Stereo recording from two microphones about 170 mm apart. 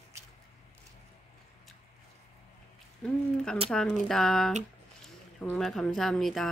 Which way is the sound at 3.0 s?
5° left (ahead or behind).